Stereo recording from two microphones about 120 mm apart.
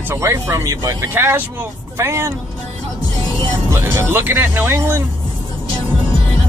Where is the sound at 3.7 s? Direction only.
20° right (ahead or behind).